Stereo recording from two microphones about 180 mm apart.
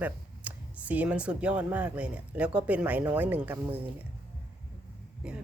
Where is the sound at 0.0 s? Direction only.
10° right (ahead or behind).